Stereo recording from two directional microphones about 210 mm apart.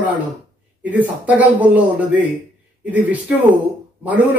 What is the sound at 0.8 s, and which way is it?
A man's voice, 5° right (ahead or behind).